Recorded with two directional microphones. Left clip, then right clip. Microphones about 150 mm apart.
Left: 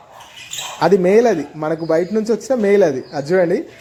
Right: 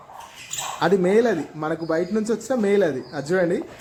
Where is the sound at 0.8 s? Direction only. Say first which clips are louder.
Left 6 dB; 20° left (ahead or behind).